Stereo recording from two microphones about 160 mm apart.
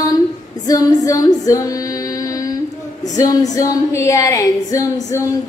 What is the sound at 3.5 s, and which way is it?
A woman's voice, 20° left (ahead or behind).